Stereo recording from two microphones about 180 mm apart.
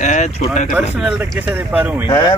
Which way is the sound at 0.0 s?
40° left (ahead or behind).